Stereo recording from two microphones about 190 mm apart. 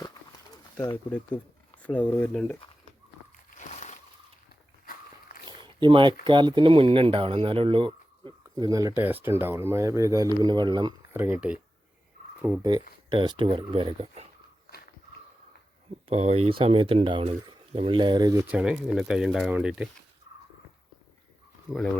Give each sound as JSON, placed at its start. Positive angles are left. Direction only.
{"t": 0.5, "sound": "speech", "side_deg": 15}
{"t": 3.6, "sound": "slosh", "side_deg": 40}
{"t": 5.5, "sound": "a sound", "side_deg": -25}
{"t": 6.2, "sound": "speech", "side_deg": -25}
{"t": 11.1, "sound": "speech", "side_deg": -10}
{"t": 16.0, "sound": "speech", "side_deg": -35}
{"t": 18.4, "sound": "speech", "side_deg": -5}
{"t": 21.7, "sound": "speech", "side_deg": 5}